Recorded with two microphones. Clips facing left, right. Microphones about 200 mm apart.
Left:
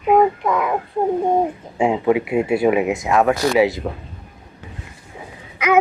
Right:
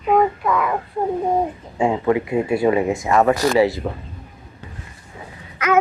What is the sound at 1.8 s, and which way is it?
Speech, 15° left (ahead or behind).